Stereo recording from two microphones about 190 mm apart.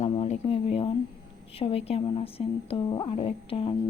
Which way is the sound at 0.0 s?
30° left (ahead or behind).